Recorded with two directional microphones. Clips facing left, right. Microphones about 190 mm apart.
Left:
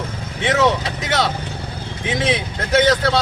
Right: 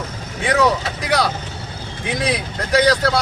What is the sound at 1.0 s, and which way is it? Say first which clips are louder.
Speech: right 1 dB; centre (ahead or behind).